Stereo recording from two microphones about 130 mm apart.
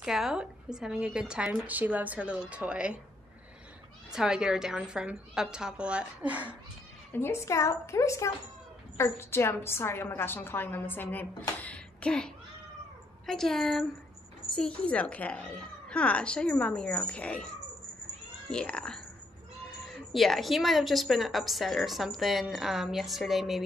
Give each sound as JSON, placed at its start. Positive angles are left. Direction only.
{"t": 0.0, "sound": "a woman's voice", "side_deg": -5}
{"t": 4.1, "sound": "speech", "side_deg": -5}
{"t": 7.1, "sound": "a woman's voice", "side_deg": 20}
{"t": 13.3, "sound": "speech", "side_deg": 5}
{"t": 18.5, "sound": "speech", "side_deg": 5}